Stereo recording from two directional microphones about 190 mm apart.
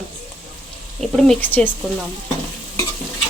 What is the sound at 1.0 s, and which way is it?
Speech, centre (ahead or behind).